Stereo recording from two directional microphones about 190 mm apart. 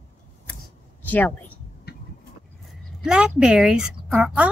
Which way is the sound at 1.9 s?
55° left (ahead or behind).